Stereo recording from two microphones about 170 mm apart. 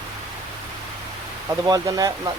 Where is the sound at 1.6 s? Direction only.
20° right (ahead or behind).